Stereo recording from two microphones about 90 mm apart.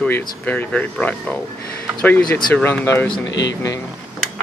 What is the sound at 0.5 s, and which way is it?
Speech, 15° left (ahead or behind).